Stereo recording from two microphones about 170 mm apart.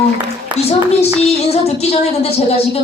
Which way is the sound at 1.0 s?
35° left (ahead or behind).